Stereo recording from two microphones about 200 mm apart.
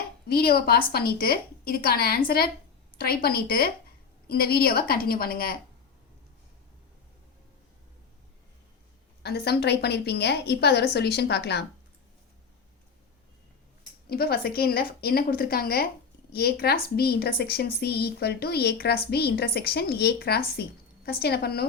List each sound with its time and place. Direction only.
0.3 s speech: 50° left (ahead or behind)
9.2 s a woman's voice: 55° left (ahead or behind)
14.1 s speech: 50° left (ahead or behind)